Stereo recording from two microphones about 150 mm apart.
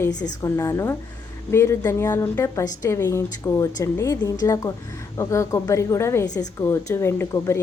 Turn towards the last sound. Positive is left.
turn(degrees=15)  # may be behind; listen again after turning